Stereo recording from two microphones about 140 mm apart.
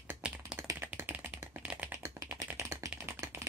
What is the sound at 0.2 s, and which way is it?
Typing, 5° right (ahead or behind).